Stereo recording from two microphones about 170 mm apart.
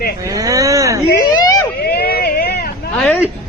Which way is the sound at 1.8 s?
70° left (ahead or behind).